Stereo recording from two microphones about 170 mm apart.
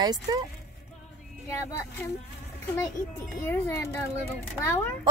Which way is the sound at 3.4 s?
15° left (ahead or behind).